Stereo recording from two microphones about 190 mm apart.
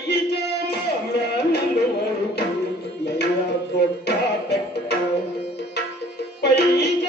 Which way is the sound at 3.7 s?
60° left (ahead or behind).